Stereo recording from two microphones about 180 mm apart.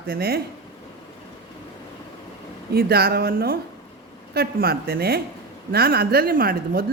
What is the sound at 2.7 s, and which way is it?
A woman's voice, 60° right (ahead or behind).